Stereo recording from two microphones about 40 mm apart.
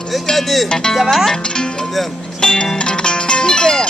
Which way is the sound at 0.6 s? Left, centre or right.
Centre.